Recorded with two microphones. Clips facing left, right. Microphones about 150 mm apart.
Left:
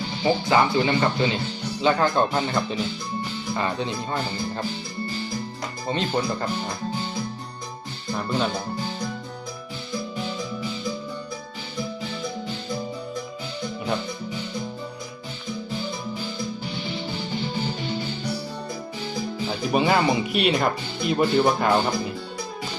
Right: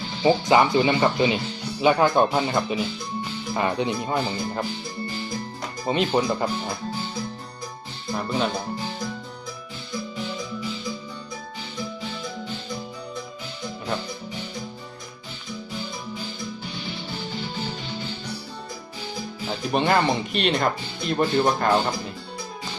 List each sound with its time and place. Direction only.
0.2 s speech: 20° right (ahead or behind)
5.9 s speech: 15° right (ahead or behind)
8.1 s speech: 5° right (ahead or behind)
19.5 s speech: 5° left (ahead or behind)